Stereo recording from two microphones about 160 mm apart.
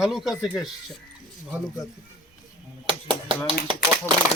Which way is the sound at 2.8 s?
35° right (ahead or behind).